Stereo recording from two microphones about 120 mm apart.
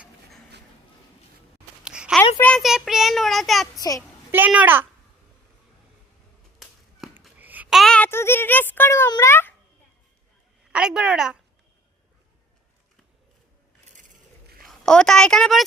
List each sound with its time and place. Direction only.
1.8 s a sound: 5° right (ahead or behind)
2.6 s child singing: centre (ahead or behind)
4.3 s a child's voice: 15° right (ahead or behind)
7.3 s babbling: 15° right (ahead or behind)
7.7 s a sound: centre (ahead or behind)
7.9 s a sound: 15° left (ahead or behind)
9.2 s a child's voice: 20° left (ahead or behind)
10.7 s a woman's voice: 10° right (ahead or behind)
14.6 s a woman's voice: 5° left (ahead or behind)